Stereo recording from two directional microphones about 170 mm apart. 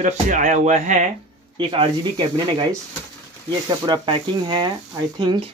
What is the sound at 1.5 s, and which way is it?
Speech, 30° right (ahead or behind).